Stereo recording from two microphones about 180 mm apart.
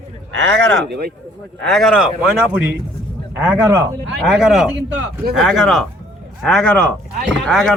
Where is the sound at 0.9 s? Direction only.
60° right (ahead or behind).